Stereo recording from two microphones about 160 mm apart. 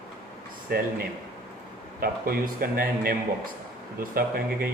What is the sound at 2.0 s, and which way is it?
A man's voice, 65° right (ahead or behind).